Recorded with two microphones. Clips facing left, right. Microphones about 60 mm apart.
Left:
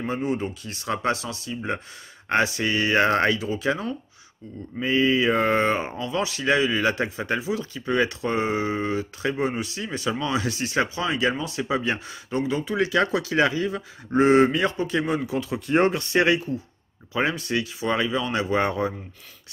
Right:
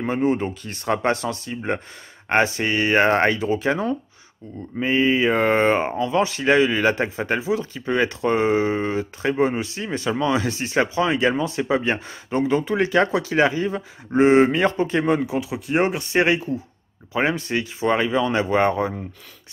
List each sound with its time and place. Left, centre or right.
0.0 s speech: right
15.2 s speech: centre
16.0 s speech: right